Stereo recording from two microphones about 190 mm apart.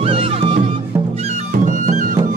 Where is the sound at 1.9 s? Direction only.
40° right (ahead or behind).